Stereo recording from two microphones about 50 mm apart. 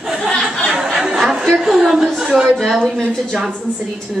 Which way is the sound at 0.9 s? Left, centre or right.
Centre.